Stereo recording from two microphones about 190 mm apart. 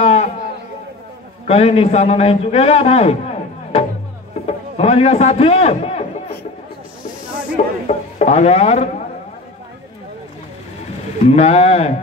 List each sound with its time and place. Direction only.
0.0 s a sound: 35° left (ahead or behind)
1.5 s a man's voice: 35° left (ahead or behind)
7.6 s a man's voice: 35° left (ahead or behind)
11.2 s a man's voice: 35° left (ahead or behind)